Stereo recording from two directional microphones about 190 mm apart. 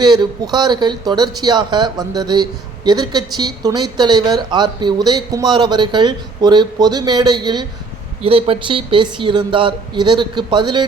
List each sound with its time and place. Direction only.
0.0 s speech: 20° right (ahead or behind)